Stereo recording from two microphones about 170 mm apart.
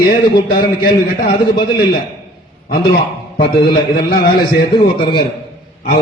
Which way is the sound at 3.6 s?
65° left (ahead or behind).